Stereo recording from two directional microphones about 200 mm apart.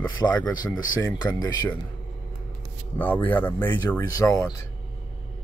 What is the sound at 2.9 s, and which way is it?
Speech, 10° left (ahead or behind).